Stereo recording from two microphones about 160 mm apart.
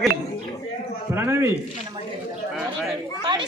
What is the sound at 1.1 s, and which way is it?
Speech, 15° right (ahead or behind).